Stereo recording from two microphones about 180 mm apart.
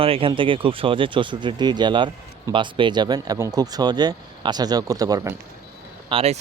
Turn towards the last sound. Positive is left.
turn(degrees=-30)  # may be behind; listen again after turning